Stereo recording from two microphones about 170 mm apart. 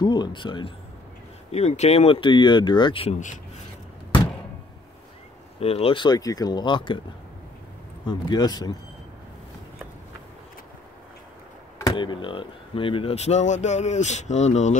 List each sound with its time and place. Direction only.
0.0 s speech: 25° left (ahead or behind)
1.5 s speech: 40° left (ahead or behind)
3.2 s speech: 45° left (ahead or behind)
5.6 s speech: 35° left (ahead or behind)
8.1 s speech: 25° left (ahead or behind)
11.8 s speech: 30° left (ahead or behind); by 14.8 s 45° left (ahead or behind)